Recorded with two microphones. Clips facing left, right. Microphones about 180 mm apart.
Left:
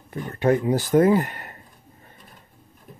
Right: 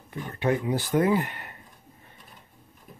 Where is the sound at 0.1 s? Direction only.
45° left (ahead or behind).